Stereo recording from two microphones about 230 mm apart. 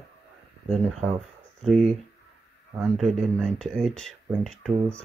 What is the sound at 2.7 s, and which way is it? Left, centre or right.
Speech, centre.